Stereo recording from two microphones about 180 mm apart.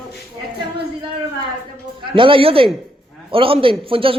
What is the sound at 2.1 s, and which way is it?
A man's voice, 30° right (ahead or behind).